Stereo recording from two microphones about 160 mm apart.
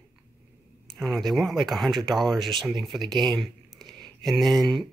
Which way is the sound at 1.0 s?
Centre (ahead or behind).